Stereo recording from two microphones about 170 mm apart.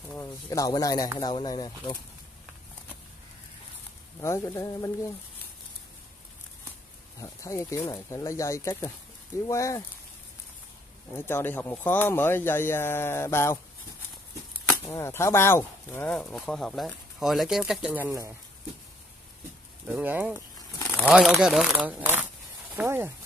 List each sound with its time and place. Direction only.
0.1 s speech: 15° left (ahead or behind)
4.2 s speech: 15° left (ahead or behind)
7.2 s speech: 20° left (ahead or behind)
11.1 s speech: 15° left (ahead or behind)
14.9 s speech: 15° left (ahead or behind); by 18.3 s 15° right (ahead or behind)
19.9 s speech: 10° right (ahead or behind)